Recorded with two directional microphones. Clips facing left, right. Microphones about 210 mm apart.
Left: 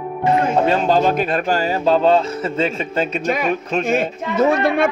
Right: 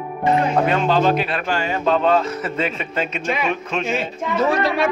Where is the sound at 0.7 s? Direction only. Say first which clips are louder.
Left 1 dB; 40° left (ahead or behind).